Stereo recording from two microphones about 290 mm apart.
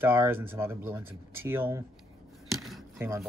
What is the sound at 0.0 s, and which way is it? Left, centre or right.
Speech, centre.